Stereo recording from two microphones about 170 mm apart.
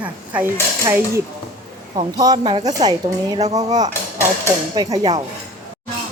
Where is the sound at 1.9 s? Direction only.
25° right (ahead or behind).